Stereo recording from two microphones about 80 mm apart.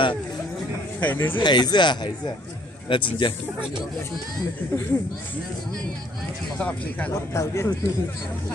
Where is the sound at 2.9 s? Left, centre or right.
Left.